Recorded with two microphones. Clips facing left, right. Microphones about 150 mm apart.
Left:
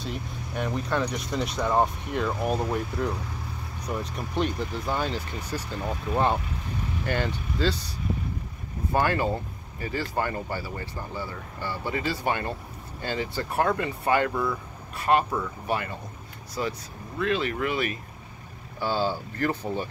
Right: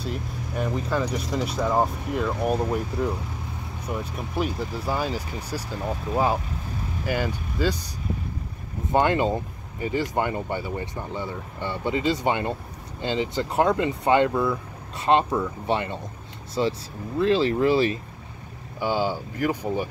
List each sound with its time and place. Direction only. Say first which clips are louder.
0.0 s speech: right 3 dB; 5° right (ahead or behind)
8.9 s speech: right 4 dB; 20° right (ahead or behind)
18.8 s speech: right 2 dB; 15° right (ahead or behind)